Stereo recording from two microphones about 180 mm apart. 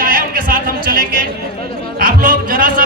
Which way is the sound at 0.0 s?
50° right (ahead or behind).